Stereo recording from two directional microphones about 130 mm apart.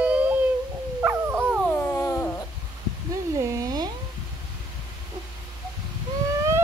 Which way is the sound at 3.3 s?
25° right (ahead or behind).